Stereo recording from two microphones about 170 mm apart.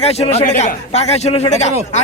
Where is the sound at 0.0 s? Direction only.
40° left (ahead or behind).